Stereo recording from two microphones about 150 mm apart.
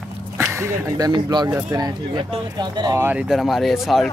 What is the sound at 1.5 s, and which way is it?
Speech, 15° right (ahead or behind).